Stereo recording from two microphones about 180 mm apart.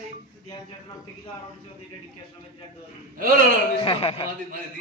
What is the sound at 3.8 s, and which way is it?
Speech, 30° left (ahead or behind).